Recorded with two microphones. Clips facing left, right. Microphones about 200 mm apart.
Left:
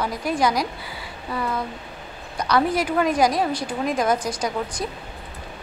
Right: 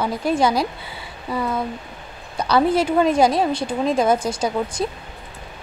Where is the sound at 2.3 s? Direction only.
30° right (ahead or behind).